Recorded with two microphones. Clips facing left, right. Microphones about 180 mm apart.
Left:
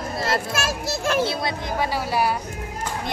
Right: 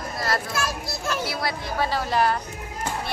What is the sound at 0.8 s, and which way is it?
Speech, 90° left.